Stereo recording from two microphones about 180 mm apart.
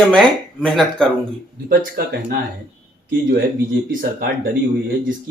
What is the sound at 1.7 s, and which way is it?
Speech, 55° right (ahead or behind).